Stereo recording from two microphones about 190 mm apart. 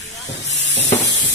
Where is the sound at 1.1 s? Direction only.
70° left (ahead or behind).